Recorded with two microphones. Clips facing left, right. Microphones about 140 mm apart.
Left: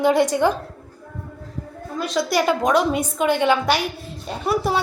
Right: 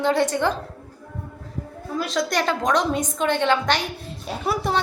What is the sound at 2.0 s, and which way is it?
A woman's voice, centre (ahead or behind).